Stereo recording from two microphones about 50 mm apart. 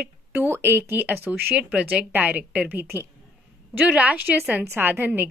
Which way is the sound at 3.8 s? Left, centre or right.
Right.